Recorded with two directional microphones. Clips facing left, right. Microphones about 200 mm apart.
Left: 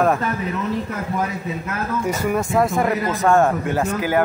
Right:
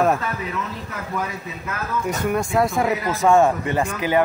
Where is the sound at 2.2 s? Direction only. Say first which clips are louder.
Left 1 dB; 5° left (ahead or behind).